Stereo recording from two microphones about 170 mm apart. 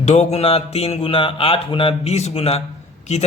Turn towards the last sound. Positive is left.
turn(degrees=40)  # may be behind; listen again after turning